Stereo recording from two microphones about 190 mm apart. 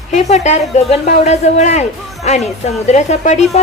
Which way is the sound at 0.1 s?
35° left (ahead or behind).